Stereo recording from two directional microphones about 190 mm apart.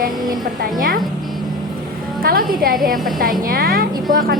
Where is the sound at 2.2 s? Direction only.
50° right (ahead or behind).